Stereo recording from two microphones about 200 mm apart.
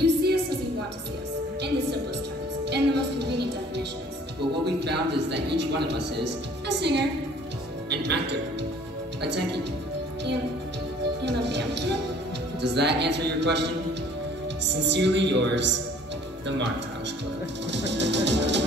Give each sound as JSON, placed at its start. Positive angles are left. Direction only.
{"t": 0.0, "sound": "a sound", "side_deg": -55}
{"t": 2.6, "sound": "music", "side_deg": -55}
{"t": 4.6, "sound": "a woman's voice", "side_deg": -55}
{"t": 11.2, "sound": "music", "side_deg": -60}
{"t": 12.6, "sound": "speech", "side_deg": -60}
{"t": 14.7, "sound": "speech", "side_deg": -60}